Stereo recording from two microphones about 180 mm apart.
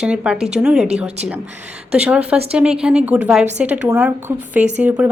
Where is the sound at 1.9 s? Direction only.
5° right (ahead or behind).